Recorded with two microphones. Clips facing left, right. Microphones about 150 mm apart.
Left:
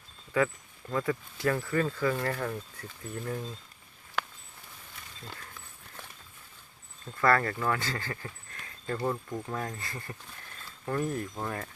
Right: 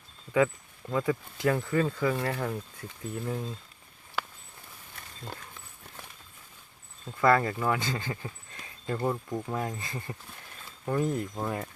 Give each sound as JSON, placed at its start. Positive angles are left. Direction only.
{"t": 0.3, "sound": "speech", "side_deg": -10}
{"t": 7.2, "sound": "speech", "side_deg": -15}